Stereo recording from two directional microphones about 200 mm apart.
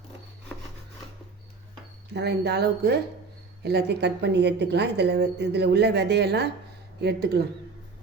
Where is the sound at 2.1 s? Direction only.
55° right (ahead or behind).